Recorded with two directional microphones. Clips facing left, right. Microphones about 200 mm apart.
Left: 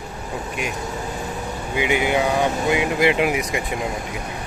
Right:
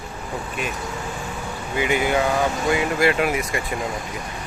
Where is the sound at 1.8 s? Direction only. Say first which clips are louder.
Even; 15° left (ahead or behind).